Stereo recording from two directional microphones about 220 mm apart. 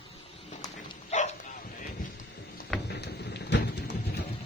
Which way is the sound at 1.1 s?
30° left (ahead or behind).